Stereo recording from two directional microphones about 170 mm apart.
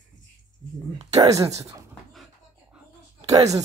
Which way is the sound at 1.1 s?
20° right (ahead or behind).